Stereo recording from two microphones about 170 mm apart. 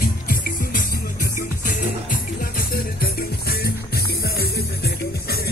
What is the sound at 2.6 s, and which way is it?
Music, 65° left (ahead or behind).